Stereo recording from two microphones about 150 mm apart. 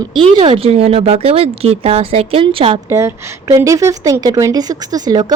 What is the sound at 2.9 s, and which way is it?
A woman's voice, 20° right (ahead or behind).